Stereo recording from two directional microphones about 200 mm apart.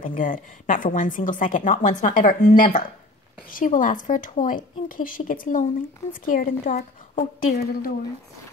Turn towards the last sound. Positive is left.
turn(degrees=40)  # may be behind; listen again after turning